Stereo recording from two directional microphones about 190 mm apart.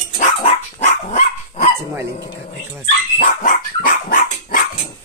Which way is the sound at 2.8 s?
45° left (ahead or behind).